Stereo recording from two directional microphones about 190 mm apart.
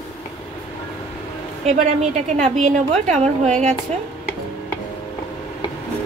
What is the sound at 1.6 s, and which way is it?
A woman's voice, 40° right (ahead or behind).